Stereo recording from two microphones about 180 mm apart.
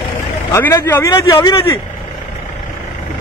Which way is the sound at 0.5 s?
15° left (ahead or behind).